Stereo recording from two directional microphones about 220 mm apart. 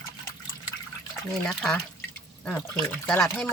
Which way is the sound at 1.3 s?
5° left (ahead or behind).